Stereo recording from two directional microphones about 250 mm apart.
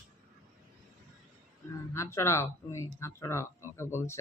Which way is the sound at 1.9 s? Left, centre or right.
Centre.